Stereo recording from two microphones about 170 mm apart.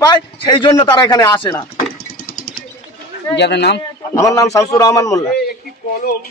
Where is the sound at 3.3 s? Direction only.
85° left.